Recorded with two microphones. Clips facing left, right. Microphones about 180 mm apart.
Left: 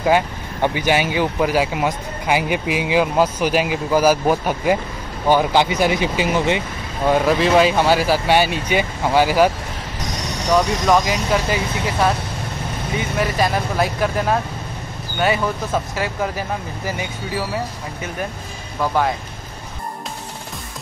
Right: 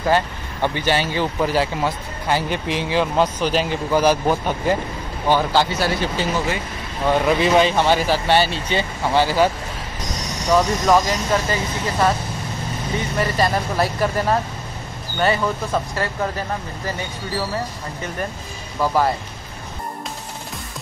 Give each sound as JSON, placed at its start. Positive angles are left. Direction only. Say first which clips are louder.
{"t": 0.0, "sound": "speech", "louder": "left 2 dB", "side_deg": 10}
{"t": 7.1, "sound": "speech", "louder": "left 1 dB", "side_deg": 0}
{"t": 10.5, "sound": "speech", "louder": "even", "side_deg": 0}
{"t": 13.2, "sound": "speech", "louder": "even", "side_deg": 0}
{"t": 18.8, "sound": "speech", "louder": "right 1 dB", "side_deg": -5}